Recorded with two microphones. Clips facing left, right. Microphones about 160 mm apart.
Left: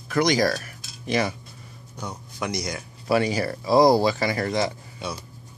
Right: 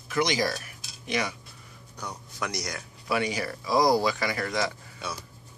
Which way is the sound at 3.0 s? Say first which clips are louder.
Left 6 dB; 35° left (ahead or behind).